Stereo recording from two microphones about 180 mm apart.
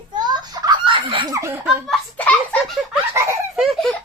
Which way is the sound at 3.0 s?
15° right (ahead or behind).